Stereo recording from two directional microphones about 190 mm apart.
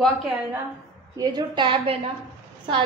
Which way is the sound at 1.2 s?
25° right (ahead or behind).